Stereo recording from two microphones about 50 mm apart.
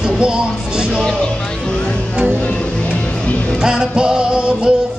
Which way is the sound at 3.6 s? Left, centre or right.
Centre.